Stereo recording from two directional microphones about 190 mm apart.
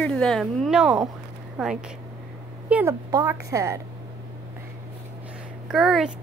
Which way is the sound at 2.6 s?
10° right (ahead or behind).